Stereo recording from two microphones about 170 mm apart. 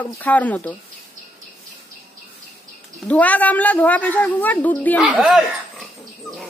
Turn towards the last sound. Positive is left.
turn(degrees=-5)  # may be behind; listen again after turning